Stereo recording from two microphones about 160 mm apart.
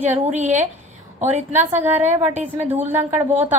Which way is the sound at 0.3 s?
50° right (ahead or behind).